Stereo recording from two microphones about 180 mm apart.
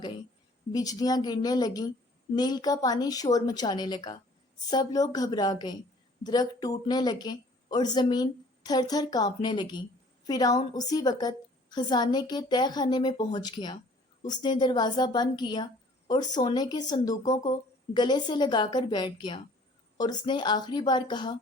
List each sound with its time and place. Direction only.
0.7 s a woman's voice: 20° left (ahead or behind)